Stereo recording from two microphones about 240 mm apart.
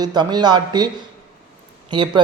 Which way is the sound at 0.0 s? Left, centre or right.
Centre.